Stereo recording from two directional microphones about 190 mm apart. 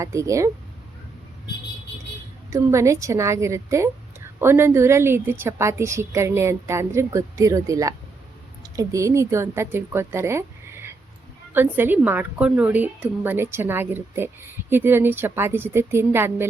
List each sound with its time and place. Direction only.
0.0 s a woman's voice: 15° right (ahead or behind)
2.5 s a woman's voice: 15° right (ahead or behind)